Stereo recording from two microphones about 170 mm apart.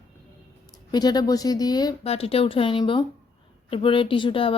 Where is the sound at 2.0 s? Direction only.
35° left (ahead or behind).